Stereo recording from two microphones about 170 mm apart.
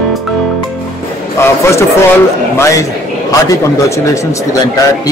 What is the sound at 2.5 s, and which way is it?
Mantra, 20° left (ahead or behind).